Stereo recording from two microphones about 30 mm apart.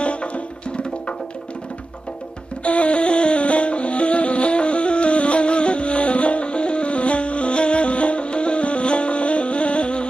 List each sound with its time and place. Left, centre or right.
0.0 s music: left
2.6 s music: left